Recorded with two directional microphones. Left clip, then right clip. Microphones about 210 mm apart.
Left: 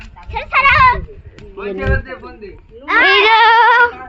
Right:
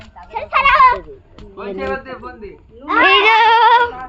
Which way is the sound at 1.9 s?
25° left (ahead or behind).